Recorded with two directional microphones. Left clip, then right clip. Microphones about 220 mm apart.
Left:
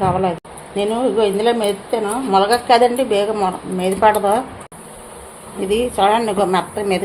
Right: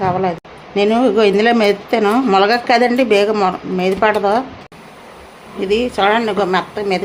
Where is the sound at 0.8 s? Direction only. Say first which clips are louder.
Right 4 dB; 25° right (ahead or behind).